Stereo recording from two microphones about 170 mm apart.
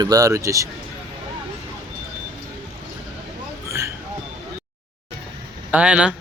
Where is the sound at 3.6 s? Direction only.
15° right (ahead or behind).